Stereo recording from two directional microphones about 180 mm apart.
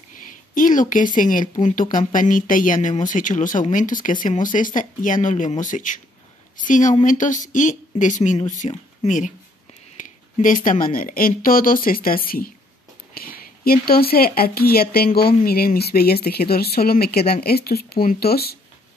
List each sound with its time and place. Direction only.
0.6 s speech: 45° left (ahead or behind)